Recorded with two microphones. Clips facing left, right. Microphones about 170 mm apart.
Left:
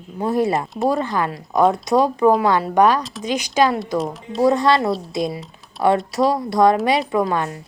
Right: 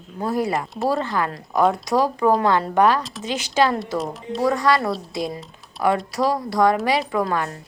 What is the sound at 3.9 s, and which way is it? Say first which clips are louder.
Speech: left 2 dB; centre (ahead or behind).